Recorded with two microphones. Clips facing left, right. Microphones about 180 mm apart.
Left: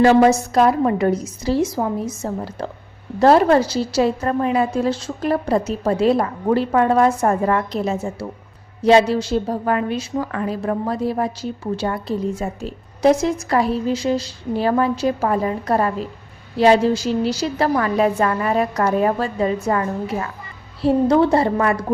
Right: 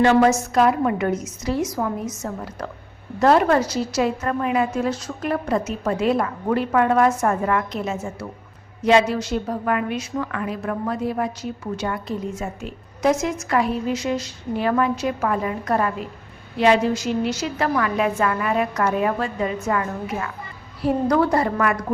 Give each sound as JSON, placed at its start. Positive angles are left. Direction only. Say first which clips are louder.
{"t": 0.0, "sound": "a woman's voice", "louder": "left 3 dB", "side_deg": 35}